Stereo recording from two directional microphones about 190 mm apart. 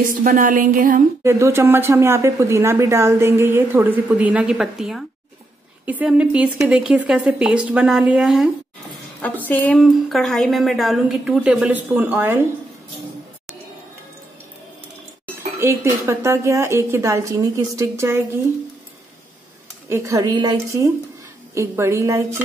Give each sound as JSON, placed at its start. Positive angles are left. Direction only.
{"t": 0.2, "sound": "speech", "side_deg": -45}
{"t": 1.2, "sound": "a woman's voice", "side_deg": -15}
{"t": 9.5, "sound": "a woman's voice", "side_deg": 5}
{"t": 15.6, "sound": "speech", "side_deg": -15}
{"t": 19.9, "sound": "speech", "side_deg": -15}